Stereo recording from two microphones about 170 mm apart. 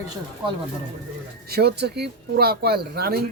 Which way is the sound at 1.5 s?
75° right (ahead or behind).